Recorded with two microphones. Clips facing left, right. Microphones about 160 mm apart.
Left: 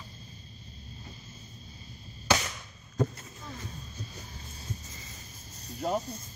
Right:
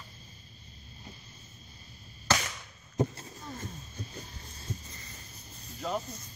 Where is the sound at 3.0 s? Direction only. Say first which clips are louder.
Even; 20° right (ahead or behind).